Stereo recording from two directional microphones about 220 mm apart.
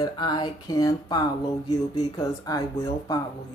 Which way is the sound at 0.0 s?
20° left (ahead or behind).